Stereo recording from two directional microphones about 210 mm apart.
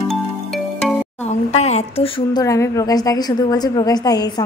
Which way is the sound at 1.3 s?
30° left (ahead or behind).